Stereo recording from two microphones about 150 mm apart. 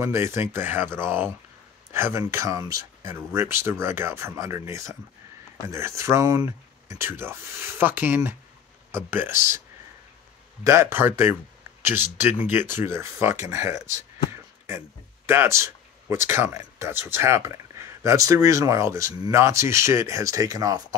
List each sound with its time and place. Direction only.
0.0 s speech: 15° right (ahead or behind)
10.6 s speech: 20° right (ahead or behind)
15.2 s speech: 15° right (ahead or behind)